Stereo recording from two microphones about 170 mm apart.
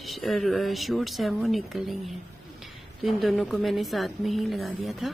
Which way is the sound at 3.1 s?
Centre (ahead or behind).